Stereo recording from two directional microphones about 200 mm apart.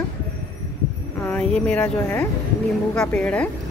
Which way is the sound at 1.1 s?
5° left (ahead or behind).